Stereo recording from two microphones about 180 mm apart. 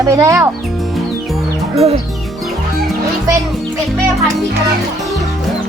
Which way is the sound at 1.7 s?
35° right (ahead or behind).